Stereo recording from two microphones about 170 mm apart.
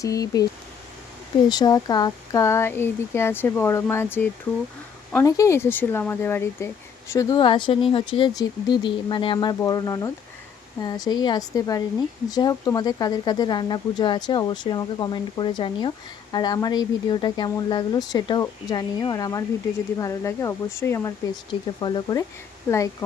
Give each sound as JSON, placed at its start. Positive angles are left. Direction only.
{"t": 0.0, "sound": "speech", "side_deg": 20}
{"t": 1.5, "sound": "speech", "side_deg": 25}
{"t": 21.8, "sound": "speech", "side_deg": 25}